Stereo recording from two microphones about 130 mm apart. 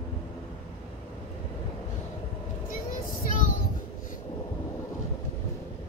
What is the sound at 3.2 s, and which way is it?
Child singing, 90° left.